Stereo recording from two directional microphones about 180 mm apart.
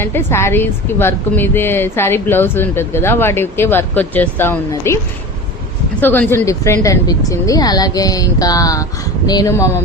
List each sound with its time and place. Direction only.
0.0 s a woman's voice: 10° left (ahead or behind)
6.0 s speech: 10° left (ahead or behind)